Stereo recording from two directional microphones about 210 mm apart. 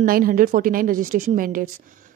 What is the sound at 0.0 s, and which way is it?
A woman's voice, 40° right (ahead or behind).